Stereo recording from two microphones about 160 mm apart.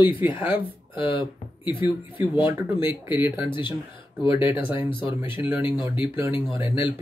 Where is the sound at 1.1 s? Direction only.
30° left (ahead or behind).